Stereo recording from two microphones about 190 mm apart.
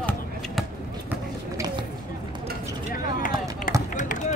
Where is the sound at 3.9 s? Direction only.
40° left (ahead or behind).